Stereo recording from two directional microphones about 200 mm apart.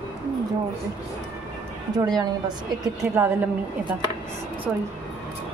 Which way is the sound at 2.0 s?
20° right (ahead or behind).